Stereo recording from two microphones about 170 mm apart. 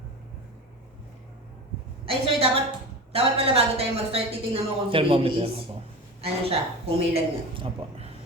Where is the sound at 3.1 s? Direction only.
35° right (ahead or behind).